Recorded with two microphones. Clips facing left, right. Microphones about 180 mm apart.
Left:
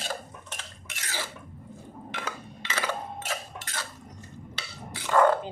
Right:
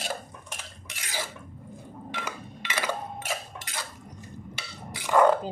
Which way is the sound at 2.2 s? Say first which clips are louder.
Even; 15° right (ahead or behind).